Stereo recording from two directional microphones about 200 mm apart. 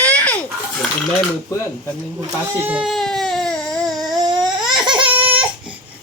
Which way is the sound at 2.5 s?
5° right (ahead or behind).